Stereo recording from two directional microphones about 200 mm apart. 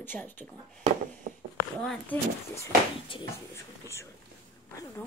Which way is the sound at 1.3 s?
50° right (ahead or behind).